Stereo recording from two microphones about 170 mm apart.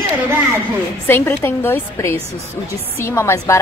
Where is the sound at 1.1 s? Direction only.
15° left (ahead or behind).